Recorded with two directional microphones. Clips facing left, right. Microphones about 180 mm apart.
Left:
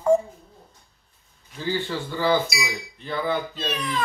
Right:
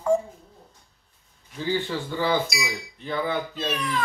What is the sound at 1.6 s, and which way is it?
Cutlery, 15° right (ahead or behind).